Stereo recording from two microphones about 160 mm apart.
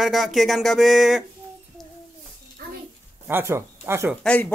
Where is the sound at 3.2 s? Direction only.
15° right (ahead or behind).